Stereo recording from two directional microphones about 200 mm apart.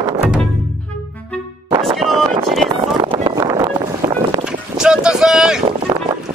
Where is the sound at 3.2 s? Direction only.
20° right (ahead or behind).